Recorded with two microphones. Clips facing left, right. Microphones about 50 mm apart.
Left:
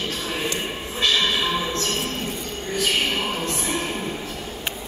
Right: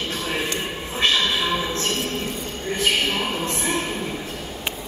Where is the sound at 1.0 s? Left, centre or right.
Right.